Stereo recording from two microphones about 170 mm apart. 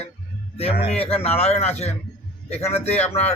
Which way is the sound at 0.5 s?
35° left (ahead or behind).